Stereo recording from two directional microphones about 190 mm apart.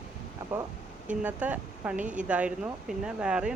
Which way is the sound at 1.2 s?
10° right (ahead or behind).